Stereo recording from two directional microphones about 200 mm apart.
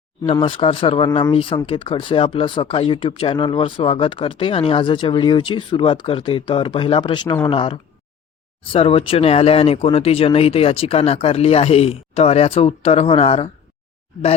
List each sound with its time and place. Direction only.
0.3 s speech: 25° left (ahead or behind)